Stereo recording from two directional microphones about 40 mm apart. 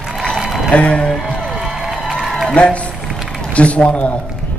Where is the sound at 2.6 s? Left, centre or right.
Left.